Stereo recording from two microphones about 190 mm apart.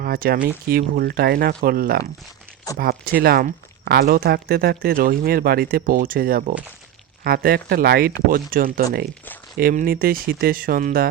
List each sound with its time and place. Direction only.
0.0 s speech: 50° right (ahead or behind)